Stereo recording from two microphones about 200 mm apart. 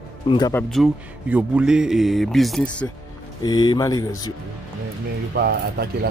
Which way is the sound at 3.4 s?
20° left (ahead or behind).